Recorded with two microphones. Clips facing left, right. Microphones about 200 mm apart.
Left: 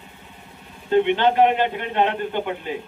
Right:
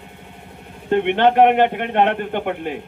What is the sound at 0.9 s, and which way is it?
A man's voice, 60° right (ahead or behind).